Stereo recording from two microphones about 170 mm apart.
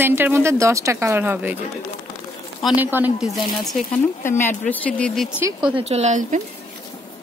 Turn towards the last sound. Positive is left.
turn(degrees=-45)  # may be behind; listen again after turning